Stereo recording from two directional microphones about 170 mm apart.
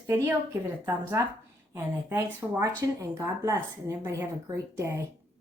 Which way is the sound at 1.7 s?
15° right (ahead or behind).